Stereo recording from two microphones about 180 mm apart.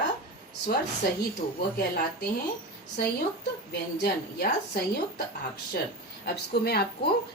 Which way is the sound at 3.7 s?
60° left (ahead or behind).